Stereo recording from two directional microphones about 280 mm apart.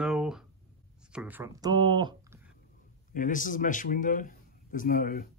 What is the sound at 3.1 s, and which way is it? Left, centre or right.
A man's voice, left.